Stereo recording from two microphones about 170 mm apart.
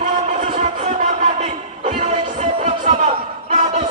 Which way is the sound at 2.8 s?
45° right (ahead or behind).